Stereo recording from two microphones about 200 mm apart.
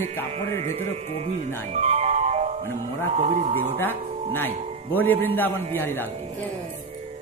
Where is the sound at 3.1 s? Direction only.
35° right (ahead or behind).